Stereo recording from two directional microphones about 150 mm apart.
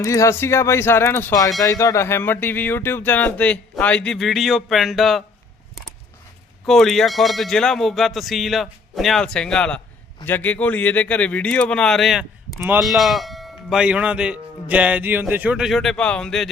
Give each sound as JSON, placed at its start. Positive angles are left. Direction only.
{"t": 0.0, "sound": "speech", "side_deg": 20}
{"t": 6.7, "sound": "speech", "side_deg": 0}
{"t": 12.5, "sound": "speech", "side_deg": -10}
{"t": 12.8, "sound": "speech", "side_deg": 0}